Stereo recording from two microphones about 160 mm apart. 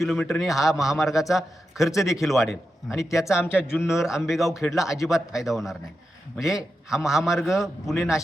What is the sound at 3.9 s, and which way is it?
A man's voice, 5° right (ahead or behind).